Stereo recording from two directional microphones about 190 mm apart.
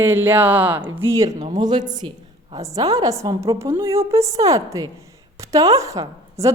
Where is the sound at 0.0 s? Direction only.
10° right (ahead or behind).